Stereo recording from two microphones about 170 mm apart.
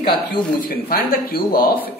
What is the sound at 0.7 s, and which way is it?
Speech, 65° left (ahead or behind).